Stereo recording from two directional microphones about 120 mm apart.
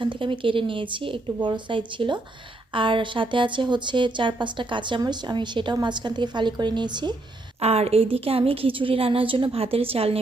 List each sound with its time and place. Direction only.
0.0 s a woman's voice: 45° right (ahead or behind)
7.6 s a woman's voice: 60° right (ahead or behind)